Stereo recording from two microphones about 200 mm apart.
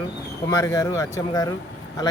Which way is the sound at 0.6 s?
15° left (ahead or behind).